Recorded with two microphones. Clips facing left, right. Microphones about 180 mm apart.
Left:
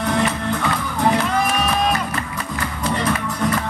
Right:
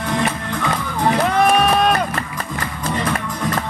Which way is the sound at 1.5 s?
60° right (ahead or behind).